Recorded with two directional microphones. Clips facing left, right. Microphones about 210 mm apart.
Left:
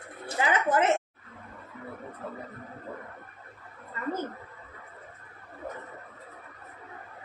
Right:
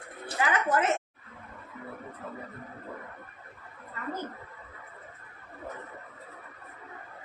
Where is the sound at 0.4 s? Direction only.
25° left (ahead or behind).